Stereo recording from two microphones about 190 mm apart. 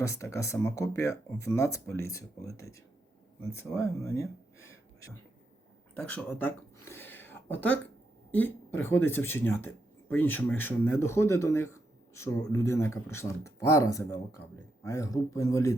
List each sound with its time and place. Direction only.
0.0 s speech: 15° left (ahead or behind)
6.0 s a sound: 5° left (ahead or behind)
8.3 s a woman's voice: 10° left (ahead or behind)